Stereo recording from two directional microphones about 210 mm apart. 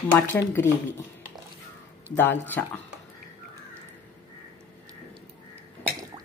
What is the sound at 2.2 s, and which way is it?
Speech, 10° left (ahead or behind).